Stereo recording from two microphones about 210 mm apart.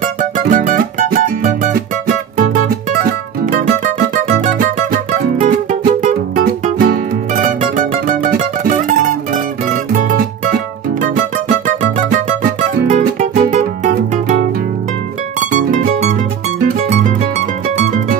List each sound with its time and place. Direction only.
0.0 s music: 40° right (ahead or behind)
3.4 s music: 40° right (ahead or behind)
15.7 s music: 40° right (ahead or behind)